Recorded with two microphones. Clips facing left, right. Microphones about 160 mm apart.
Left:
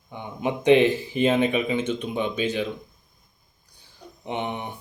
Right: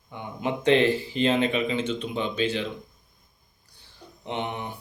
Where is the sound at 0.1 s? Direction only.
15° left (ahead or behind).